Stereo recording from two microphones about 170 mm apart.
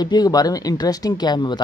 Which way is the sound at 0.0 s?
25° left (ahead or behind).